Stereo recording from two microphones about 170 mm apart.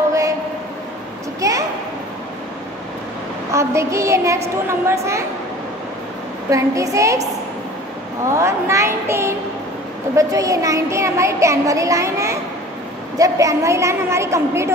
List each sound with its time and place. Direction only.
1.4 s a sound: 20° right (ahead or behind)
3.5 s a woman's voice: 15° right (ahead or behind)
6.5 s speech: 20° right (ahead or behind)
8.3 s a woman's voice: 15° right (ahead or behind)